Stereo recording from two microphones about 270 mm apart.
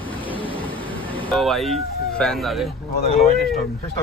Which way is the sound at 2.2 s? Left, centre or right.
Centre.